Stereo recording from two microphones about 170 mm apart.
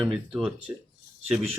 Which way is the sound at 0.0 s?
Centre (ahead or behind).